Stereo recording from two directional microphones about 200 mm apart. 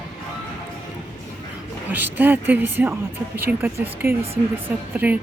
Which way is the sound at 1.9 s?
10° right (ahead or behind).